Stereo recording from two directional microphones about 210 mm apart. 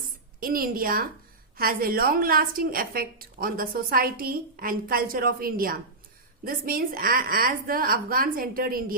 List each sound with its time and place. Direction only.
0.3 s a woman's voice: 45° right (ahead or behind)